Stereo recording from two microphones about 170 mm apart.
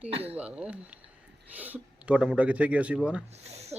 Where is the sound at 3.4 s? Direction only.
40° right (ahead or behind).